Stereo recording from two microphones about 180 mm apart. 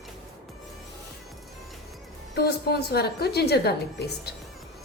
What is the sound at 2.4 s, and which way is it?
A woman's voice, 60° left (ahead or behind).